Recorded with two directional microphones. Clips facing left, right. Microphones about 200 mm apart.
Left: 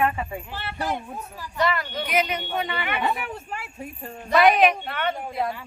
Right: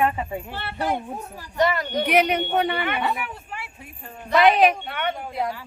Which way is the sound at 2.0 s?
65° right (ahead or behind).